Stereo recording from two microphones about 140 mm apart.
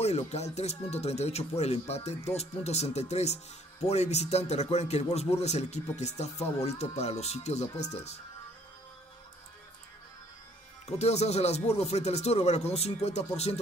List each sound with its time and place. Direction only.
0.0 s speech: 50° left (ahead or behind)
10.9 s speech: 50° left (ahead or behind)